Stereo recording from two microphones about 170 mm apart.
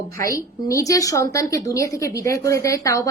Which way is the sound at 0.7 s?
20° left (ahead or behind).